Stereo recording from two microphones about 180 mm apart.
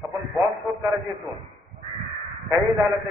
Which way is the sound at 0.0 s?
Centre (ahead or behind).